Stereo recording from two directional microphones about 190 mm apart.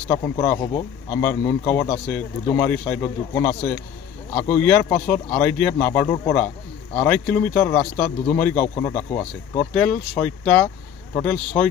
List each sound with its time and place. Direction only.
0.1 s speech: 15° left (ahead or behind)